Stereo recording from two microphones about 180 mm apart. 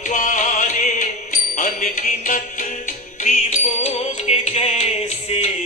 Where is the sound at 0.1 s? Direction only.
45° left (ahead or behind).